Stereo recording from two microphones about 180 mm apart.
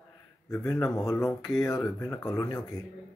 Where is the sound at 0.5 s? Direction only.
20° left (ahead or behind).